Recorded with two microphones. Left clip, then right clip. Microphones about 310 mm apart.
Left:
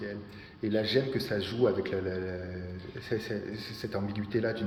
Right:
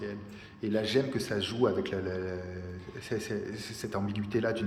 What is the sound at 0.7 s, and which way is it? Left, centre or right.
A man's voice, centre.